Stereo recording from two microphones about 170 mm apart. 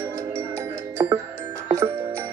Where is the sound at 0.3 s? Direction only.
15° right (ahead or behind).